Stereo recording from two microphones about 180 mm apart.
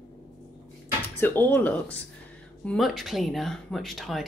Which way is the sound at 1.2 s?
10° left (ahead or behind).